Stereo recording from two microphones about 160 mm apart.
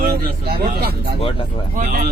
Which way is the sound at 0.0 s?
70° right (ahead or behind).